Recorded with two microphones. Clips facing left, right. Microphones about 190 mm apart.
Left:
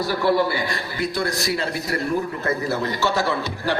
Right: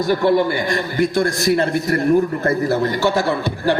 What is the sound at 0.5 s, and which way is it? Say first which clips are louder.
A man's voice: right 7 dB; 45° right (ahead or behind).